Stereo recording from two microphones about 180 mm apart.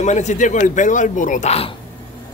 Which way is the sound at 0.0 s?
40° left (ahead or behind).